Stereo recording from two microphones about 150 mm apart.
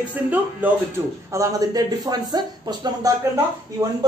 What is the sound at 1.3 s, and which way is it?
A woman's voice, 20° right (ahead or behind).